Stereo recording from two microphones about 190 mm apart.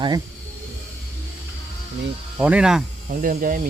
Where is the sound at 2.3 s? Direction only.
5° right (ahead or behind).